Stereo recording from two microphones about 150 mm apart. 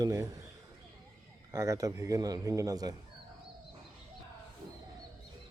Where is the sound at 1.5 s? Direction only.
20° right (ahead or behind).